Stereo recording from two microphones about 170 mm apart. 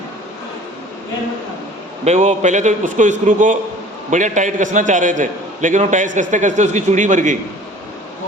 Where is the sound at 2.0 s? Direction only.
40° right (ahead or behind).